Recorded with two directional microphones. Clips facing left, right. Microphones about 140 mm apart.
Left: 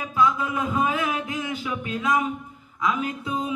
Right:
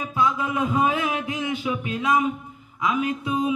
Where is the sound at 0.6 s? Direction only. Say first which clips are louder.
Right 4 dB; 25° right (ahead or behind).